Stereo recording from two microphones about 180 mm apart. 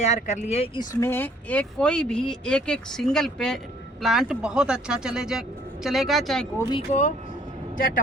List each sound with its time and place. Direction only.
0.0 s speech: 40° left (ahead or behind)
0.8 s speech: 15° left (ahead or behind)
6.6 s speech: 25° left (ahead or behind)